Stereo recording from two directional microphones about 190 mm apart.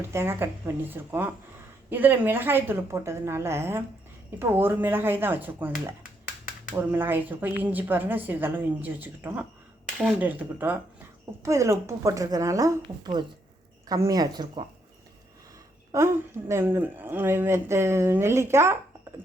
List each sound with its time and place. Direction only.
0.1 s a woman's voice: 10° right (ahead or behind)
11.4 s a woman's voice: 15° right (ahead or behind)
15.9 s a woman's voice: 15° right (ahead or behind)